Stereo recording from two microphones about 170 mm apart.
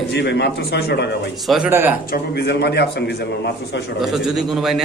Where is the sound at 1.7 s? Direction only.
15° right (ahead or behind).